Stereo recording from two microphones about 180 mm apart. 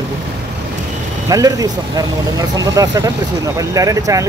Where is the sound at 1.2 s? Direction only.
20° right (ahead or behind).